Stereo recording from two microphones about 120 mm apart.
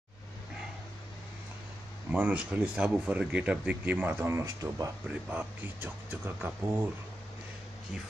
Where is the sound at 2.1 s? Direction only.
10° right (ahead or behind).